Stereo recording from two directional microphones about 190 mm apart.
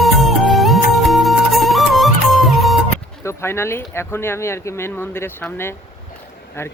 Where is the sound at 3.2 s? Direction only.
15° left (ahead or behind).